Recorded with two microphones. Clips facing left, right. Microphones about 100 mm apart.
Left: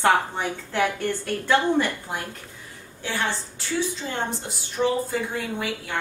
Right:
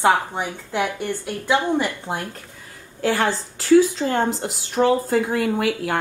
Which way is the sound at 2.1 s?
25° right (ahead or behind).